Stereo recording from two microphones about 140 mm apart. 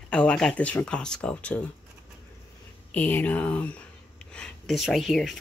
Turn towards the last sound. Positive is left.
turn(degrees=0)  # may be behind; listen again after turning